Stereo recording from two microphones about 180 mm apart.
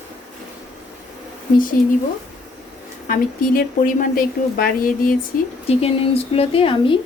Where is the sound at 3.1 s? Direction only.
50° left (ahead or behind).